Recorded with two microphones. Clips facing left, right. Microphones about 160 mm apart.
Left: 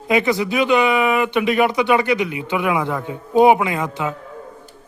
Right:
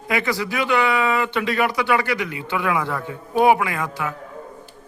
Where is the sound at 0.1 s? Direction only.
20° left (ahead or behind).